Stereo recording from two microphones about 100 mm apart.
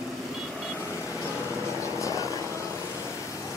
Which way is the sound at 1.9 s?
35° left (ahead or behind).